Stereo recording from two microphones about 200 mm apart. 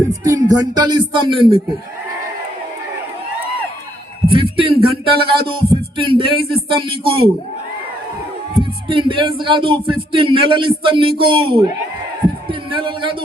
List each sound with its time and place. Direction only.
0.3 s speech: 20° right (ahead or behind)
4.3 s speech: 25° right (ahead or behind)
8.9 s speech: 25° right (ahead or behind)
12.5 s heart murmur: 25° right (ahead or behind)